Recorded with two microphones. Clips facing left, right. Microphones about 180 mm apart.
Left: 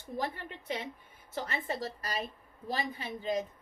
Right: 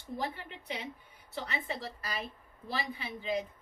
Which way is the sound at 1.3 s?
45° left (ahead or behind).